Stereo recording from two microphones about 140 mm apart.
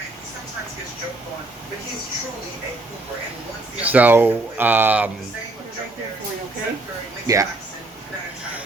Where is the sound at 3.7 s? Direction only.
10° right (ahead or behind).